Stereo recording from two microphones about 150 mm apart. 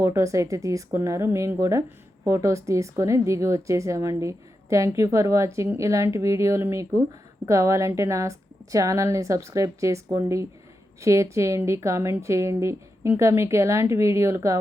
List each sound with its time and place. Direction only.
0.0 s a woman's voice: 20° right (ahead or behind)